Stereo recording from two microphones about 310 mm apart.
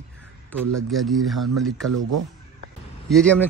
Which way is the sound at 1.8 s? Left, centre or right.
Right.